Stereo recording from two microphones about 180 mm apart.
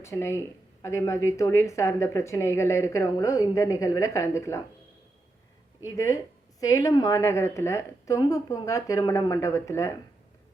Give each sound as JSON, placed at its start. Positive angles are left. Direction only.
{"t": 0.0, "sound": "speech", "side_deg": 15}
{"t": 6.6, "sound": "speech", "side_deg": 20}